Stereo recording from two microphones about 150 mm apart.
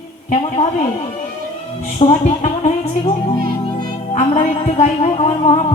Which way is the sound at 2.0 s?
45° left (ahead or behind).